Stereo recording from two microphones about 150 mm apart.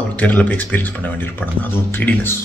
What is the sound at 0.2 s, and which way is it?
Speech, 10° left (ahead or behind).